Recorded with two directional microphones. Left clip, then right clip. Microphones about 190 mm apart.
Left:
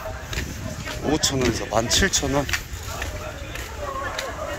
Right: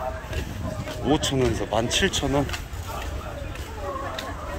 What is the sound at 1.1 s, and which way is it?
Speech, 15° right (ahead or behind).